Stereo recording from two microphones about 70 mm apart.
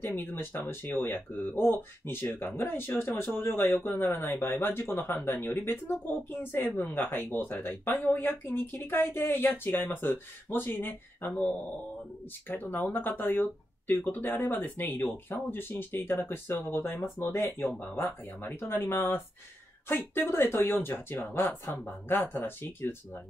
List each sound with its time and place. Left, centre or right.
0.0 s speech: left